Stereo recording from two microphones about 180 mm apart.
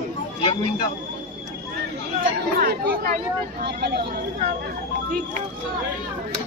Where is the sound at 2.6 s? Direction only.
55° right (ahead or behind).